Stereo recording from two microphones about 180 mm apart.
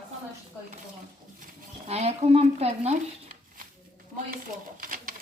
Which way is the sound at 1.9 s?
35° right (ahead or behind).